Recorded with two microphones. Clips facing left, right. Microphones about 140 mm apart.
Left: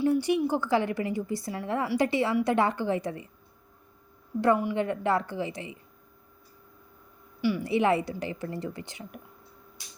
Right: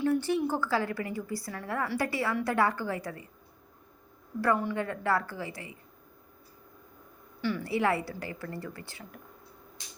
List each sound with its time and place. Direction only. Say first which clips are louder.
0.0 s a woman's voice: left 3 dB; 15° left (ahead or behind)
4.4 s a woman's voice: left 4 dB; 15° left (ahead or behind)
7.4 s a woman's voice: left 4 dB; 15° left (ahead or behind)